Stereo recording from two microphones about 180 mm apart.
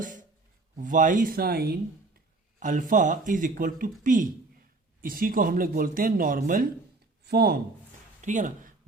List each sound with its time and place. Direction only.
0.8 s speech: 45° right (ahead or behind); by 1.8 s 60° right (ahead or behind)
2.6 s speech: 45° right (ahead or behind)
7.3 s speech: 60° right (ahead or behind)
8.2 s speech: 45° right (ahead or behind)